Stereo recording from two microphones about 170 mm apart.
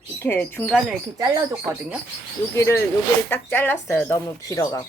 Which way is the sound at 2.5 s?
15° left (ahead or behind).